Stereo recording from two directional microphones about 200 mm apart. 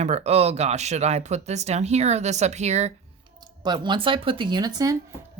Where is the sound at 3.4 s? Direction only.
20° right (ahead or behind).